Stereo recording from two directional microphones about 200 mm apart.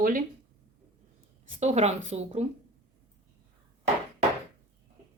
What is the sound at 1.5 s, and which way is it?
Speech, 35° right (ahead or behind).